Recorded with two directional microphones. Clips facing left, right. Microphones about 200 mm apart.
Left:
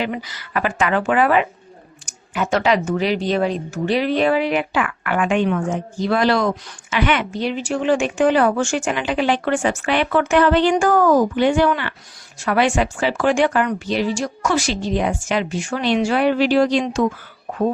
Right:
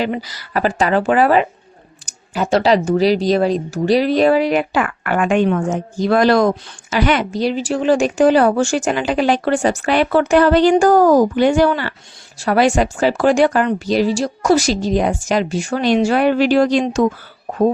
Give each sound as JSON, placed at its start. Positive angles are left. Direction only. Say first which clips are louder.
{"t": 0.0, "sound": "speech", "louder": "right 4 dB", "side_deg": -35}